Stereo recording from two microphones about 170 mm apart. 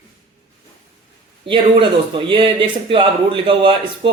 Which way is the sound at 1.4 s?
30° right (ahead or behind).